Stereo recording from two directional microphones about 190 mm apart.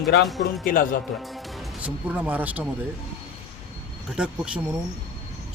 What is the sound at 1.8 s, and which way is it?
Speech, 10° right (ahead or behind).